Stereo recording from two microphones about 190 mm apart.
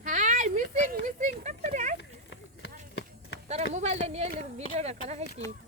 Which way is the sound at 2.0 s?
70° left (ahead or behind).